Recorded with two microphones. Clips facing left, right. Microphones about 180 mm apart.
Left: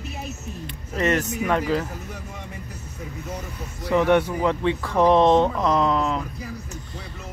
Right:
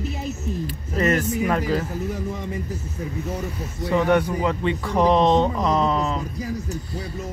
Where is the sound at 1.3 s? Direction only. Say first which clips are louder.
Right 1 dB; 40° right (ahead or behind).